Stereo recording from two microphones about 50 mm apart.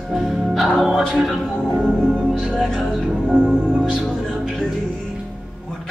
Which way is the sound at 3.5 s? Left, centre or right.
Right.